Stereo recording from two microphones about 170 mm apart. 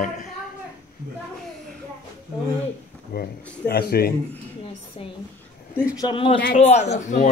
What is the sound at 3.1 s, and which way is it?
Speech, 70° left (ahead or behind).